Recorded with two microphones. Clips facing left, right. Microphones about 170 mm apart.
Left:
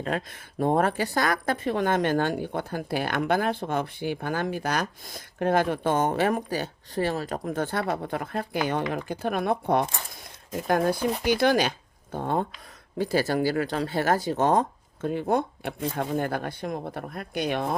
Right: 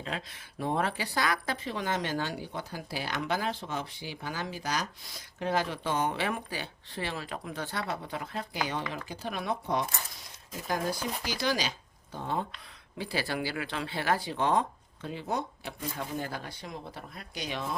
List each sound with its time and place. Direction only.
0.0 s speech: 50° left (ahead or behind)